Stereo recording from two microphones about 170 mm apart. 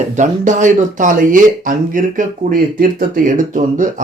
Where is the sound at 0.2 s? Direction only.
45° right (ahead or behind).